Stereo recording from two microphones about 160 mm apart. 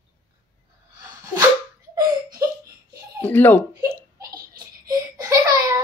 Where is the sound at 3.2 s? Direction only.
10° left (ahead or behind).